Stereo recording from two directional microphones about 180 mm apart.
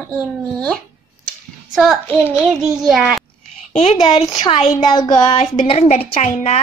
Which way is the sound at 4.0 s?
30° left (ahead or behind).